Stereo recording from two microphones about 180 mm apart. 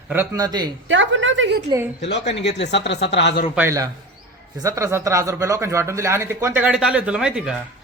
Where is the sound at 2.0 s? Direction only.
80° left.